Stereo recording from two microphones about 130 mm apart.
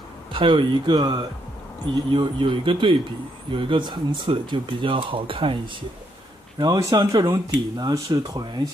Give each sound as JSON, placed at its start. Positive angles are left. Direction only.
{"t": 0.3, "sound": "speech", "side_deg": -40}
{"t": 6.6, "sound": "speech", "side_deg": -30}